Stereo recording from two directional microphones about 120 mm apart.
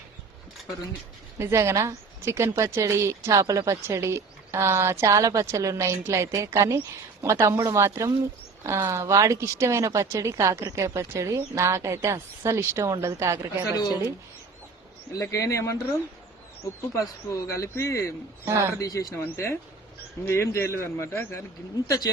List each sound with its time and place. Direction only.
1.4 s a woman's voice: 20° right (ahead or behind)
13.7 s speech: 35° left (ahead or behind)
15.1 s speech: 25° left (ahead or behind)
16.9 s speech: 25° left (ahead or behind)
18.4 s a woman's voice: 20° right (ahead or behind)
18.8 s speech: 30° left (ahead or behind)